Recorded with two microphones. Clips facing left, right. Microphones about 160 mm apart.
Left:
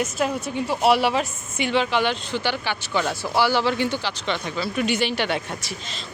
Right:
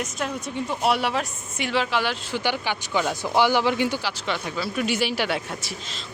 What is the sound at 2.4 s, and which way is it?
Speech, 15° right (ahead or behind).